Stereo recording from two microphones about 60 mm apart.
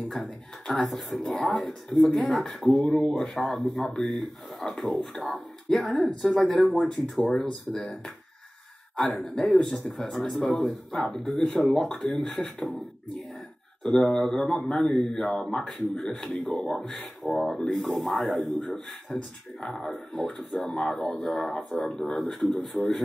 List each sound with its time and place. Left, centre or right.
0.1 s speech: centre
2.6 s a man's voice: centre
7.3 s a man's voice: centre
9.2 s a man's voice: centre
13.8 s a man's voice: centre
17.6 s a man's voice: centre
17.8 s a man's voice: centre